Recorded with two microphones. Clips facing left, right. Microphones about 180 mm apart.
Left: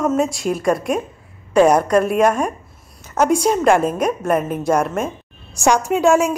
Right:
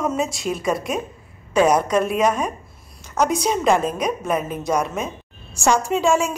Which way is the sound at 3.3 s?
50° left (ahead or behind).